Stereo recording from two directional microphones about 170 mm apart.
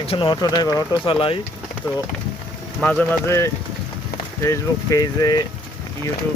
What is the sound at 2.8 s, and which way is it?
Speech, 5° left (ahead or behind).